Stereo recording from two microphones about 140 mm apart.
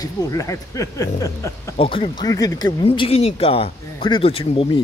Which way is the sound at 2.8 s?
40° left (ahead or behind).